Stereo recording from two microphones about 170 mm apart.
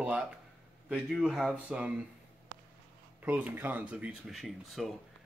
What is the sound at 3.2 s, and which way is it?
Speech, 10° right (ahead or behind).